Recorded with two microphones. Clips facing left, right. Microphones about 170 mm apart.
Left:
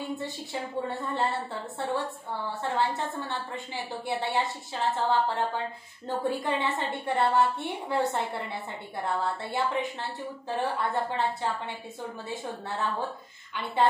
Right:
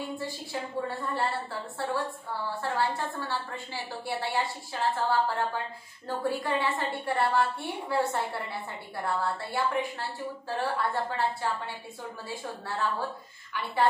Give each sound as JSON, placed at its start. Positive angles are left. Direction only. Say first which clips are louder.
{"t": 0.1, "sound": "a woman's voice", "louder": "left 1 dB", "side_deg": 20}